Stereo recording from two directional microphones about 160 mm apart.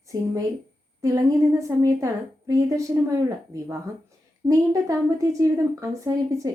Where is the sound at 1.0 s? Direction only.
20° right (ahead or behind).